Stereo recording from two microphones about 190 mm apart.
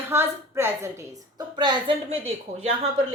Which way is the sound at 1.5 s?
25° right (ahead or behind).